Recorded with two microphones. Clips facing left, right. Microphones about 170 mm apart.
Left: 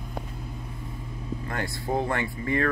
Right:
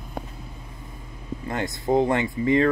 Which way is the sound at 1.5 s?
20° right (ahead or behind).